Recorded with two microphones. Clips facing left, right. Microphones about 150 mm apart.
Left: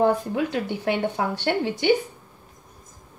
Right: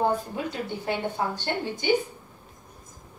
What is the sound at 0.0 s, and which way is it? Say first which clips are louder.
A woman's voice: left 5 dB; 80° left.